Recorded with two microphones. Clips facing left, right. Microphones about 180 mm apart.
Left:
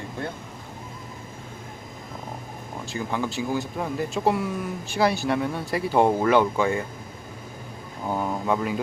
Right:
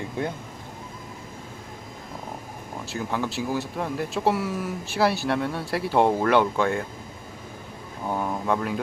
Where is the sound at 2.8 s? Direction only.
Centre (ahead or behind).